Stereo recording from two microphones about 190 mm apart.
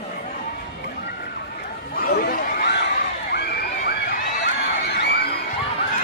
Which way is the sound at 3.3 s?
60° left (ahead or behind).